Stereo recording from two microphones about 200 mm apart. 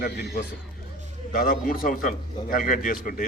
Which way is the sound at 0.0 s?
45° left (ahead or behind).